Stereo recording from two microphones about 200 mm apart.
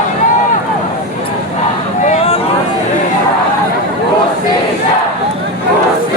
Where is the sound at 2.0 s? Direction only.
30° left (ahead or behind).